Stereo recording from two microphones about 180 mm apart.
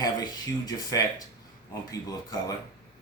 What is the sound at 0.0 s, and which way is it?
Speech, 20° left (ahead or behind).